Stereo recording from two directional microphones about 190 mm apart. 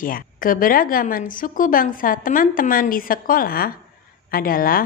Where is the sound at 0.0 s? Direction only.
45° left (ahead or behind).